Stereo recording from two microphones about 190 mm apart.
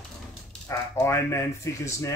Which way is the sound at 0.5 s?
5° left (ahead or behind).